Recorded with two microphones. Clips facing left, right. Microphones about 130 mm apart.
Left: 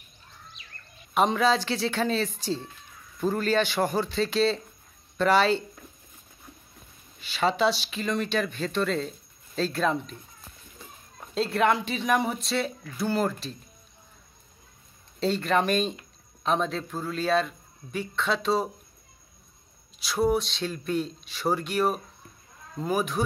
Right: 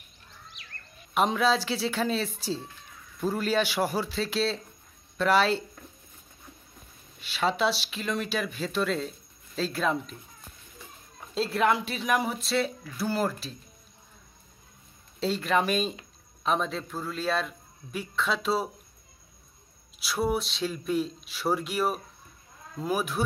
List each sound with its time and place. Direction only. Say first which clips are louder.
0.6 s bird: right 1 dB; 80° right
1.1 s speech: left 2 dB; centre (ahead or behind)
7.2 s speech: left 2 dB; centre (ahead or behind)
11.3 s speech: left 1 dB; centre (ahead or behind)
15.1 s speech: left 2 dB; centre (ahead or behind)
20.0 s speech: left 3 dB; 5° right (ahead or behind)